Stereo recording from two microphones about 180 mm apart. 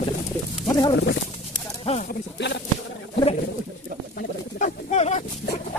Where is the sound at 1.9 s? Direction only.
30° left (ahead or behind).